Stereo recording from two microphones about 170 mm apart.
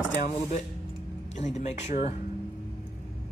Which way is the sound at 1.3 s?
40° left (ahead or behind).